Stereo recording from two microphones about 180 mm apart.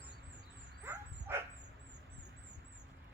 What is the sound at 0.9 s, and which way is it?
Dog, 15° right (ahead or behind).